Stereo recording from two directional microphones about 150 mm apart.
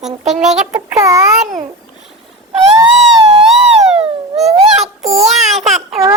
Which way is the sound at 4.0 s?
45° right (ahead or behind).